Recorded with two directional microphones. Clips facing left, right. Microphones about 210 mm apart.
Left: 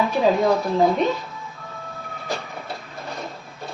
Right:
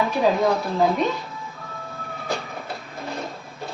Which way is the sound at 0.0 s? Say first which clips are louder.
Left 1 dB; centre (ahead or behind).